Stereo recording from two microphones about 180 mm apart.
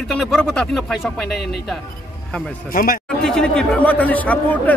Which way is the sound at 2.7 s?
50° left (ahead or behind).